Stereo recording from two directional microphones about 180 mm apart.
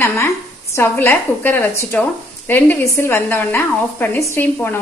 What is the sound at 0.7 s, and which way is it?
A woman's voice, 10° left (ahead or behind).